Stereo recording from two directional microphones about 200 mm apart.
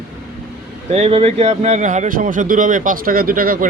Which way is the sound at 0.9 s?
30° right (ahead or behind).